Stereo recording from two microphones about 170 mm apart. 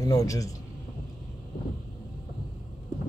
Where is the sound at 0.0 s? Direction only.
20° left (ahead or behind).